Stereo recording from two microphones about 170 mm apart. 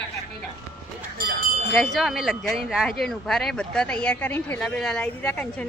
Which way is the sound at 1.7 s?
Centre (ahead or behind).